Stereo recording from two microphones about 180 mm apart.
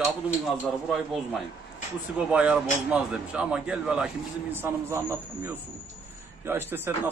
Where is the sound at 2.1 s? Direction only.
5° right (ahead or behind).